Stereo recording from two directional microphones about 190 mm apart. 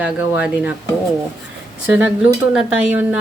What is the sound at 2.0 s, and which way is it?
Speech, 5° right (ahead or behind).